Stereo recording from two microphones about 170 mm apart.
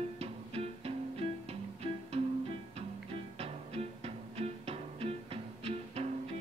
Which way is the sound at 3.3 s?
35° right (ahead or behind).